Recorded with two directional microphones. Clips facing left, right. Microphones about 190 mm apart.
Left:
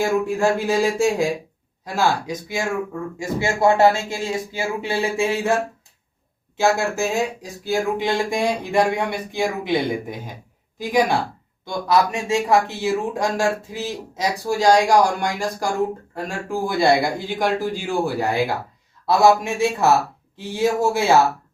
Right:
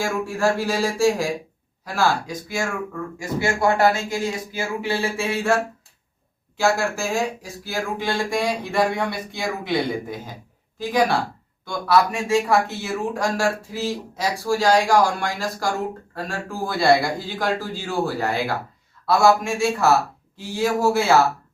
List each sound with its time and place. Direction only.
0.0 s speech: 20° left (ahead or behind)
6.6 s speech: 20° left (ahead or behind)